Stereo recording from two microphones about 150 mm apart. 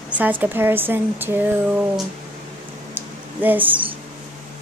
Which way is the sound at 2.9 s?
10° right (ahead or behind).